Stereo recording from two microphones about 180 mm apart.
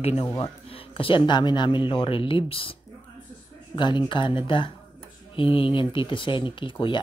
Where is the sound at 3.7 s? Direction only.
25° left (ahead or behind).